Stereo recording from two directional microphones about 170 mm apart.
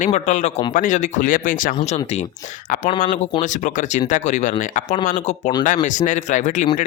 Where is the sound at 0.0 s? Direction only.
45° left (ahead or behind).